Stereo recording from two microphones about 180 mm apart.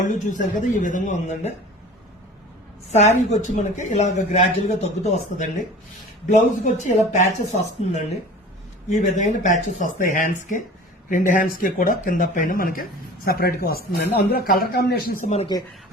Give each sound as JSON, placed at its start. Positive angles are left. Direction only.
{"t": 0.0, "sound": "speech", "side_deg": 45}
{"t": 2.9, "sound": "speech", "side_deg": 40}
{"t": 6.3, "sound": "speech", "side_deg": 45}
{"t": 8.9, "sound": "speech", "side_deg": 40}